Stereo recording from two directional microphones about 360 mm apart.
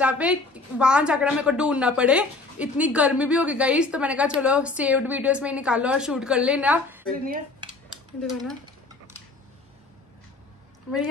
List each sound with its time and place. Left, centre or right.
0.0 s a woman's voice: centre
7.1 s dishes: right